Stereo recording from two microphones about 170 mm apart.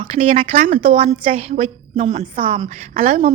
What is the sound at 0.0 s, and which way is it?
A woman's voice, 35° right (ahead or behind).